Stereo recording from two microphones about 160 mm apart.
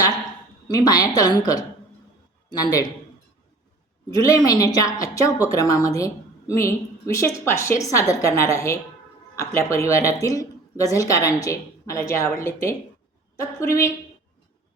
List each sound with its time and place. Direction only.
0.7 s speech: 20° left (ahead or behind)
4.1 s a woman's voice: 20° left (ahead or behind)